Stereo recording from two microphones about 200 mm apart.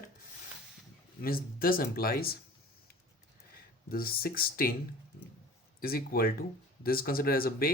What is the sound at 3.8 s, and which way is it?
Speech, 50° left (ahead or behind).